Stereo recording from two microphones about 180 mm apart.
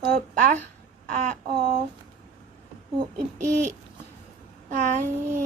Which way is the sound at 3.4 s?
45° right (ahead or behind).